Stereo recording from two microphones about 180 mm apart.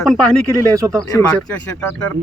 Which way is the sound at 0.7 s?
20° right (ahead or behind).